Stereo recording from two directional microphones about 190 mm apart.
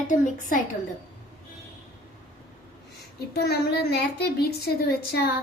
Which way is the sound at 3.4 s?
60° left (ahead or behind).